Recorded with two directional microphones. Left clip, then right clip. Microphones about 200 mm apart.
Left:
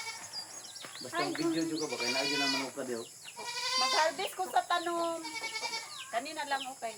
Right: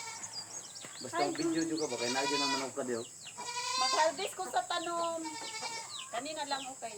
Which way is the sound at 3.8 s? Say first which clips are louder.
Left 1 dB; centre (ahead or behind).